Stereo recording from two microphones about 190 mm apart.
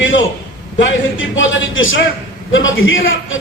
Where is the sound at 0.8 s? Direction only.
85° left.